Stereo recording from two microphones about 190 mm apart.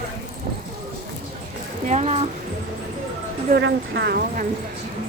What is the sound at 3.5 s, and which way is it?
Speech, 60° right (ahead or behind).